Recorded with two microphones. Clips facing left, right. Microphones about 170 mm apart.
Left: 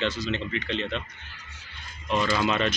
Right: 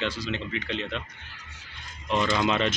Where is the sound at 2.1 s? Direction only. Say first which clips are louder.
Even; 20° right (ahead or behind).